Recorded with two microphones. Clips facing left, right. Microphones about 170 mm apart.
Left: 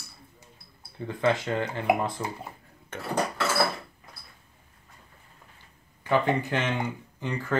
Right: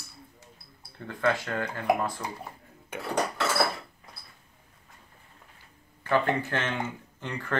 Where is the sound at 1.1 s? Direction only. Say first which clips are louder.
Left 2 dB; 15° left (ahead or behind).